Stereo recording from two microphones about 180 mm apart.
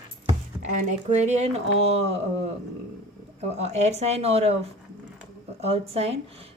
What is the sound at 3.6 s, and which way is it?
Speech, 35° right (ahead or behind).